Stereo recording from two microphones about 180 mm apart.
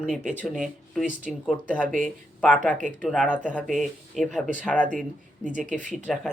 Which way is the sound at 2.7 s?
45° right (ahead or behind).